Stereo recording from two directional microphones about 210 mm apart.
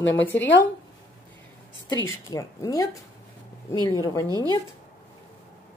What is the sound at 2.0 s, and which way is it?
Speech, 15° left (ahead or behind).